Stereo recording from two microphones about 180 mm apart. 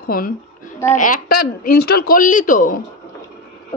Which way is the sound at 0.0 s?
55° left (ahead or behind).